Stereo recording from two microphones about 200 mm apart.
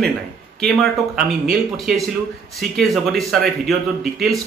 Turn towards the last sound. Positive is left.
turn(degrees=0)  # may be behind; listen again after turning